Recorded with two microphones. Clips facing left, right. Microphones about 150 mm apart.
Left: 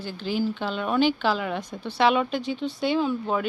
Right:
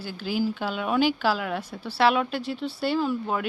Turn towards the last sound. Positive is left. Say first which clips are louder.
# left 1 dB
turn(degrees=-5)  # may be behind; listen again after turning